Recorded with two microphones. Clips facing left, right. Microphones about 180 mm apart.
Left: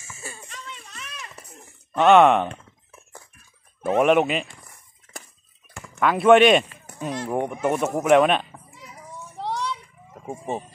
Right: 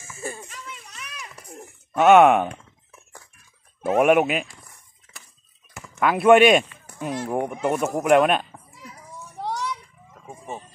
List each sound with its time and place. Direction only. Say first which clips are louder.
0.0 s children playing: right 7 dB; 55° right (ahead or behind)
0.5 s a sound: even; centre (ahead or behind)
2.0 s speech: right 1 dB; 5° right (ahead or behind)
3.8 s speech: right 1 dB; 5° right (ahead or behind)
5.8 s speech: even; 5° right (ahead or behind)
10.1 s speech: left 6 dB; 30° left (ahead or behind)